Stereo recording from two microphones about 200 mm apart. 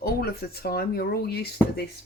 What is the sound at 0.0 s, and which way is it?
Speech, 50° left (ahead or behind).